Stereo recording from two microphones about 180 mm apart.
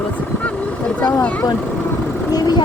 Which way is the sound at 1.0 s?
10° left (ahead or behind).